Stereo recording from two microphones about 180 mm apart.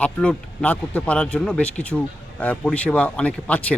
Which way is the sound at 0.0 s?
5° left (ahead or behind).